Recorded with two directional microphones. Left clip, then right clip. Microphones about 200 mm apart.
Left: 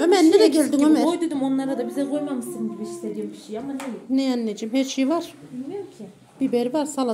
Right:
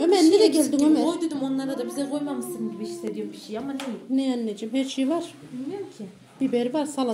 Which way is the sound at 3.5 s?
10° left (ahead or behind).